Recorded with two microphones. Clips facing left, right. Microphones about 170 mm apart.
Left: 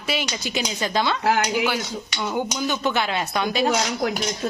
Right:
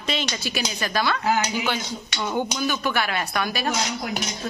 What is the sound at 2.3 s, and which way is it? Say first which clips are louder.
Speech: even; 10° left (ahead or behind).